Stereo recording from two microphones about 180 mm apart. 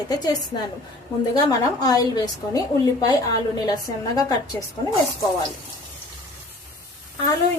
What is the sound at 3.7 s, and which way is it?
Speech, 20° left (ahead or behind).